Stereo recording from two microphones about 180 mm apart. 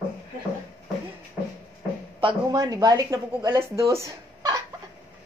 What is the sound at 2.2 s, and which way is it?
Speech, 25° right (ahead or behind).